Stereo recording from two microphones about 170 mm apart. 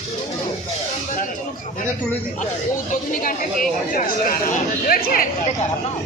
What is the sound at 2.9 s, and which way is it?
Speech, 55° left (ahead or behind).